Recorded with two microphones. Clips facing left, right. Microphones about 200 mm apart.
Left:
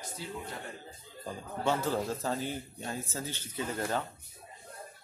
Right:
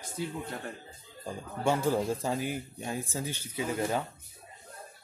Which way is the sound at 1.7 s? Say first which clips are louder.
Right 3 dB; 10° right (ahead or behind).